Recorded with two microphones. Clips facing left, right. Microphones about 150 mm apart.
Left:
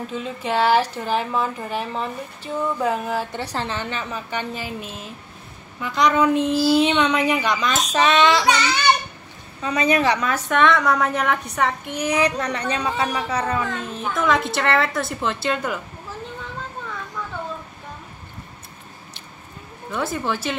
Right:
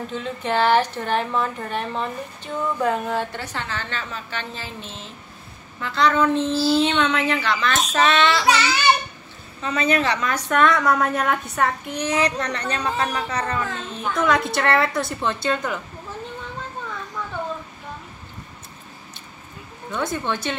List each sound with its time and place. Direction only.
0.1 s a woman's voice: 5° left (ahead or behind)
3.3 s a woman's voice: 30° left (ahead or behind)
3.7 s a woman's voice: 15° left (ahead or behind)
8.5 s a woman's voice: 5° right (ahead or behind)
9.6 s a woman's voice: 15° left (ahead or behind)
19.9 s a woman's voice: 5° left (ahead or behind)